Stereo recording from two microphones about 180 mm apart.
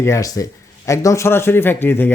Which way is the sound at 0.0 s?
15° left (ahead or behind).